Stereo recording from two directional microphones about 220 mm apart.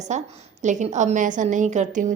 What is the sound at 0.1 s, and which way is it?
A woman's voice, 35° right (ahead or behind).